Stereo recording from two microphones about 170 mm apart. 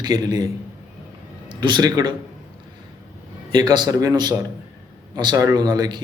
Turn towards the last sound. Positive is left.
turn(degrees=-25)  # may be behind; listen again after turning